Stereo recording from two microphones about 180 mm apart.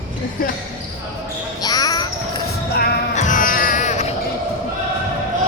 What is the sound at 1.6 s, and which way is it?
Music, 20° left (ahead or behind).